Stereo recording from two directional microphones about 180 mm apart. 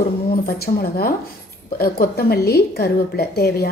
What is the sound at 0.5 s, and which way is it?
A woman's voice, 55° left (ahead or behind).